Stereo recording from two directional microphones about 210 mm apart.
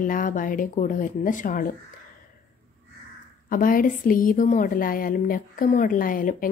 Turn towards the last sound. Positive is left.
turn(degrees=40)  # may be behind; listen again after turning